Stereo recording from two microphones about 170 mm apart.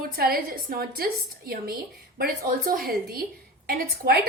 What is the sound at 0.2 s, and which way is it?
A woman's voice, 60° right (ahead or behind).